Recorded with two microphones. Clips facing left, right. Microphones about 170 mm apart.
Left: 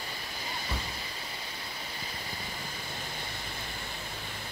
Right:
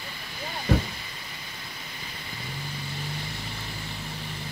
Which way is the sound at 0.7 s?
90° right.